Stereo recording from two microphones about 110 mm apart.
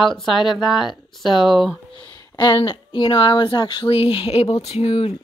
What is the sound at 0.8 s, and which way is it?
Speech, 45° left (ahead or behind).